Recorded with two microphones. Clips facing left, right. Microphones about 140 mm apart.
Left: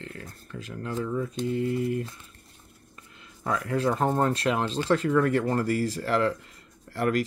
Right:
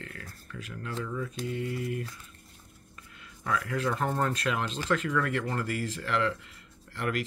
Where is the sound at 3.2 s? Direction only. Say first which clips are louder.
Left 2 dB; 30° left (ahead or behind).